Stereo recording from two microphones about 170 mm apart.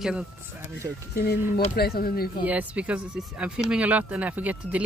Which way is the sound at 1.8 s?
60° left (ahead or behind).